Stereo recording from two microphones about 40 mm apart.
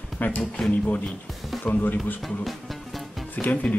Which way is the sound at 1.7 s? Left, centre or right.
Left.